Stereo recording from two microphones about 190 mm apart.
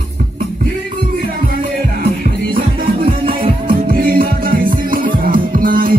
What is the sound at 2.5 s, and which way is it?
Music, 50° right (ahead or behind).